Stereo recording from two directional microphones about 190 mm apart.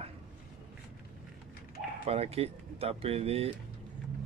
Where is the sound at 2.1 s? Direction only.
30° right (ahead or behind).